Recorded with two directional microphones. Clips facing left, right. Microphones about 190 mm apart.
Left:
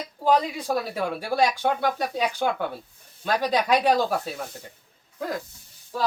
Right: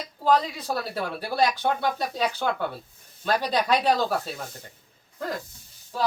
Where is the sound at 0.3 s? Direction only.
10° left (ahead or behind).